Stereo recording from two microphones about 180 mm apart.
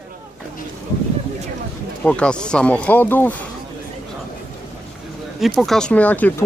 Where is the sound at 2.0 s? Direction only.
5° left (ahead or behind).